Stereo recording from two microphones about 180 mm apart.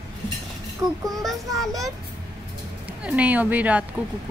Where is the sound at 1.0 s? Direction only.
Centre (ahead or behind).